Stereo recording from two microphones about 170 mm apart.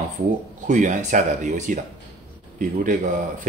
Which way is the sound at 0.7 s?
45° right (ahead or behind).